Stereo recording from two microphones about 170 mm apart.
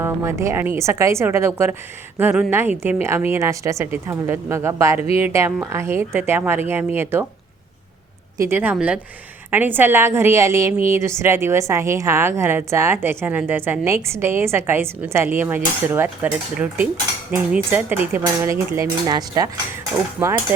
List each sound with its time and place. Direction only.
0.0 s a woman's voice: 15° right (ahead or behind)
8.4 s a woman's voice: 15° right (ahead or behind)
20.2 s a woman's voice: 10° right (ahead or behind)